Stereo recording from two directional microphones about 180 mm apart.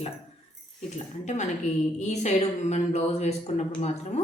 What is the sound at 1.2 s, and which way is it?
A woman's voice, 40° left (ahead or behind).